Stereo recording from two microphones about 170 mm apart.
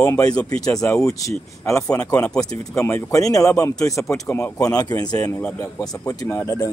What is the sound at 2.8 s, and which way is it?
Speech, 15° left (ahead or behind).